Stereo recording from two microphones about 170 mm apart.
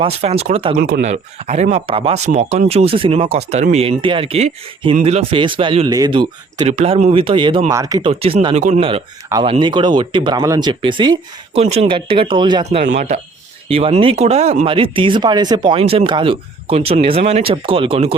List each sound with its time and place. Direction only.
0.0 s speech: 35° right (ahead or behind)
0.8 s speech: 65° right (ahead or behind)
1.0 s speech: 45° right (ahead or behind); by 8.1 s 20° right (ahead or behind)
8.2 s speech: 35° right (ahead or behind)
11.6 s speech: 40° right (ahead or behind)
13.0 s speech: 40° right (ahead or behind)